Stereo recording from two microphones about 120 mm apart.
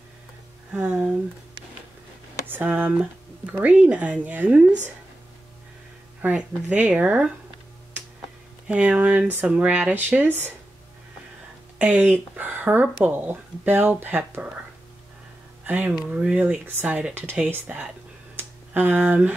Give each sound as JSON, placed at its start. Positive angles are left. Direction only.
{"t": 0.7, "sound": "speech", "side_deg": -10}
{"t": 2.4, "sound": "speech", "side_deg": -15}
{"t": 6.2, "sound": "speech", "side_deg": -10}
{"t": 8.6, "sound": "speech", "side_deg": -10}
{"t": 11.8, "sound": "speech", "side_deg": -15}
{"t": 15.6, "sound": "speech", "side_deg": -15}
{"t": 18.3, "sound": "a sound", "side_deg": -15}